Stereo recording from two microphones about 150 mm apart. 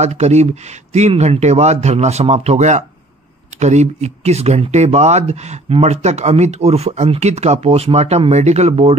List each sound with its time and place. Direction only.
0.0 s speech: 50° right (ahead or behind)